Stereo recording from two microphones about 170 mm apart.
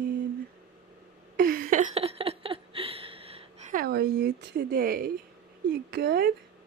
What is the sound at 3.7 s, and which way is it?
Speech, 65° right (ahead or behind).